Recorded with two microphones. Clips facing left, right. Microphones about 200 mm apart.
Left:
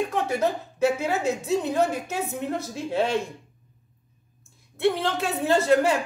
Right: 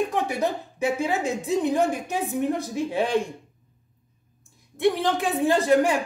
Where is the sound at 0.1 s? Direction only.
15° right (ahead or behind).